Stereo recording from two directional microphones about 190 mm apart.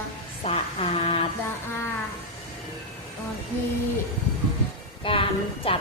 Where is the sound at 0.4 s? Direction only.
30° left (ahead or behind).